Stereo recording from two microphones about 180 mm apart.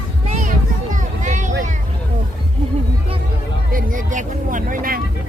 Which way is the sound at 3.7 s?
50° right (ahead or behind).